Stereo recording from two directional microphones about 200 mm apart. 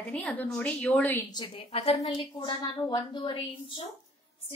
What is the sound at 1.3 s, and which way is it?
A woman's voice, 25° left (ahead or behind).